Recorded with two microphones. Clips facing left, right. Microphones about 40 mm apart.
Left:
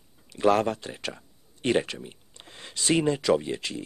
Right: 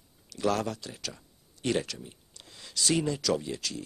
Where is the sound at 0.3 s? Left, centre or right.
Left.